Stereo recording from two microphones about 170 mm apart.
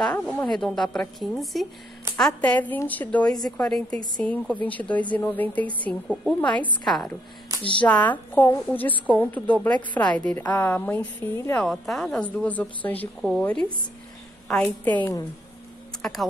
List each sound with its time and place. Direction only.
0.0 s a woman's voice: 5° left (ahead or behind)
7.5 s a sound: 20° right (ahead or behind)
7.8 s a woman's voice: 10° left (ahead or behind)
16.0 s speech: centre (ahead or behind)